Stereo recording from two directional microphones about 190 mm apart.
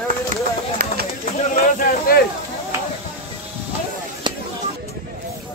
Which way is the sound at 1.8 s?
50° left (ahead or behind).